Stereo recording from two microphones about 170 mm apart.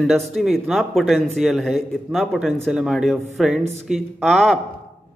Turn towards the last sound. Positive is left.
turn(degrees=0)  # may be behind; listen again after turning